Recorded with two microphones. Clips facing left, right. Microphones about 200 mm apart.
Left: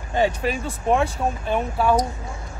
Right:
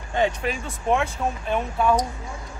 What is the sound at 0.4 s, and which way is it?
Speech, 35° left (ahead or behind).